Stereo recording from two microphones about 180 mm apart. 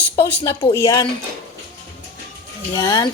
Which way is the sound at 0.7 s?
20° left (ahead or behind).